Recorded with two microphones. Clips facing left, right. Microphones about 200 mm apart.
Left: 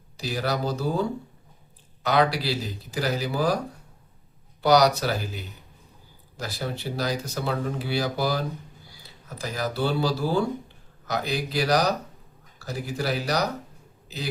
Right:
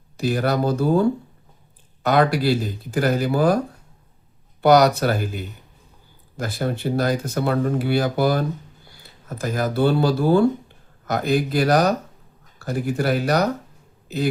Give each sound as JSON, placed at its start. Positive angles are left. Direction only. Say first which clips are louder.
{"t": 0.2, "sound": "speech", "louder": "right 7 dB", "side_deg": -55}
{"t": 2.0, "sound": "speech", "louder": "right 5 dB", "side_deg": -50}
{"t": 4.6, "sound": "speech", "louder": "right 4 dB", "side_deg": -55}